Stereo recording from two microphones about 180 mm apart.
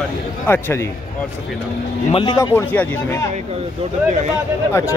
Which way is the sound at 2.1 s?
25° left (ahead or behind).